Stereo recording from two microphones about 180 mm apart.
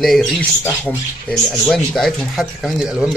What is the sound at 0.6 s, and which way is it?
Speech, 10° left (ahead or behind).